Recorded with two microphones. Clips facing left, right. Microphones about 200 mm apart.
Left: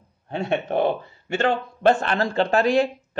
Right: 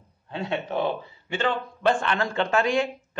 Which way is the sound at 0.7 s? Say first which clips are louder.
Left 5 dB; 50° left (ahead or behind).